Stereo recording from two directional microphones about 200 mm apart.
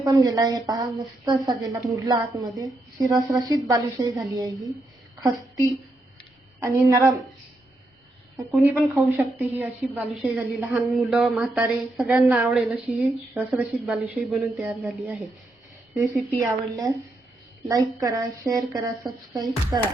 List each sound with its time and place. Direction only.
0.0 s a woman's voice: 20° right (ahead or behind)
6.6 s a woman's voice: 15° right (ahead or behind)
8.5 s a woman's voice: 10° right (ahead or behind)
16.4 s a woman's voice: 15° right (ahead or behind)